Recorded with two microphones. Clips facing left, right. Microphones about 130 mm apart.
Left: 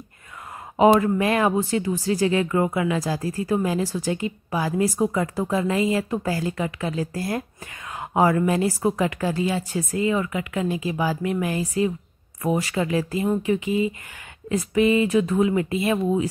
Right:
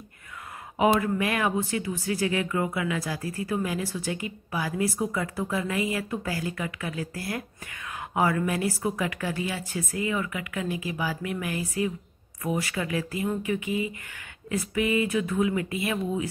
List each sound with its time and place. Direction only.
0.8 s a woman's voice: 40° left (ahead or behind)